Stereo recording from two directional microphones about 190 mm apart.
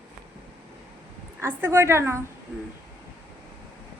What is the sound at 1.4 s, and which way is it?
Speech, 10° right (ahead or behind).